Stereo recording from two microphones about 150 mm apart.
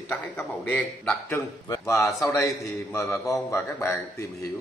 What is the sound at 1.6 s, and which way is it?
A man's voice, 20° left (ahead or behind).